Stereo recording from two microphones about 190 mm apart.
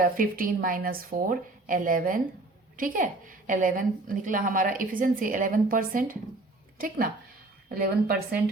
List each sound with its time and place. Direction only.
0.0 s a woman's voice: 45° right (ahead or behind)